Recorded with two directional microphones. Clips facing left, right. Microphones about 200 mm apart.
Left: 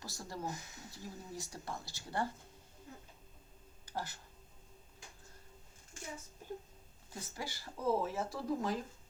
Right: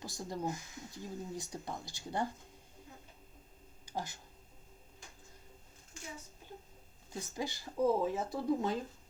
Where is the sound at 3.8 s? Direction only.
15° right (ahead or behind).